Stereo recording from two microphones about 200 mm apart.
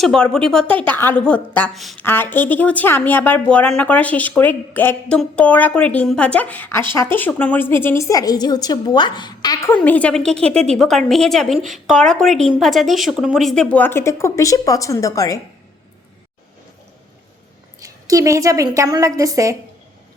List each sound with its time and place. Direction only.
0.0 s a woman's voice: centre (ahead or behind)
17.7 s a woman's voice: 15° right (ahead or behind)